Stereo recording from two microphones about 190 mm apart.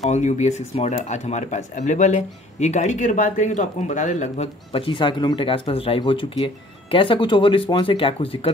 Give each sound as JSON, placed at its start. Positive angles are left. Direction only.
{"t": 0.1, "sound": "speech", "side_deg": 40}